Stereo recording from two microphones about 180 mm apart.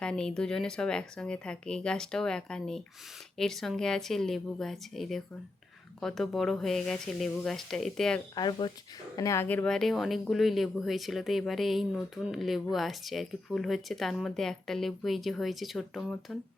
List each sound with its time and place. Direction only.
0.0 s speech: 5° left (ahead or behind)
8.4 s speech: 25° left (ahead or behind); by 16.4 s centre (ahead or behind)